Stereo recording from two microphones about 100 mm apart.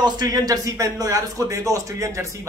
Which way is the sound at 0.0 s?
40° right (ahead or behind).